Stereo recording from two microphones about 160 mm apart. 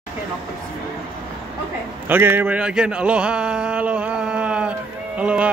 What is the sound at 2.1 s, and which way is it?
Speech, 15° right (ahead or behind).